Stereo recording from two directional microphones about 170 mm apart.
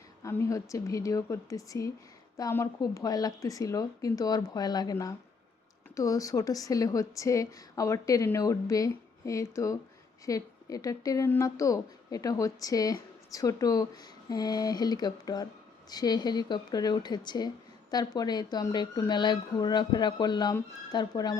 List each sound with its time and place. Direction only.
0.2 s a woman's voice: 15° left (ahead or behind)